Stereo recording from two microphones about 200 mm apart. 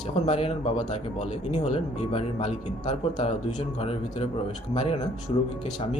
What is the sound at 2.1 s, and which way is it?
Speech, 30° left (ahead or behind).